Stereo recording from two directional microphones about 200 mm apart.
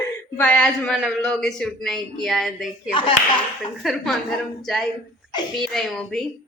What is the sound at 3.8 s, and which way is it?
Speech, centre (ahead or behind).